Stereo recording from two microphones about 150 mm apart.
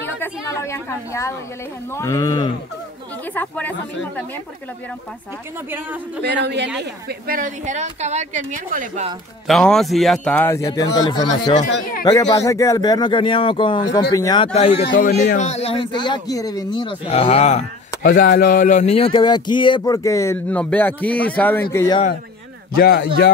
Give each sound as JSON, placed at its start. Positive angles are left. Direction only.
{"t": 0.0, "sound": "speech", "side_deg": 15}
{"t": 3.3, "sound": "speech", "side_deg": 10}
{"t": 6.8, "sound": "a woman's voice", "side_deg": -80}
{"t": 9.5, "sound": "speech", "side_deg": 5}
{"t": 10.7, "sound": "a man's voice", "side_deg": 30}
{"t": 11.5, "sound": "speech", "side_deg": 60}
{"t": 12.0, "sound": "a man's voice", "side_deg": 25}
{"t": 14.4, "sound": "a man's voice", "side_deg": 40}
{"t": 15.0, "sound": "speech", "side_deg": 90}
{"t": 15.3, "sound": "a man's voice", "side_deg": 50}
{"t": 18.0, "sound": "speech", "side_deg": 70}
{"t": 21.7, "sound": "speech", "side_deg": 25}
{"t": 22.8, "sound": "speech", "side_deg": 90}